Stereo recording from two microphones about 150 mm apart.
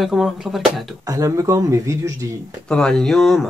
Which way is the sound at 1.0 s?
20° right (ahead or behind).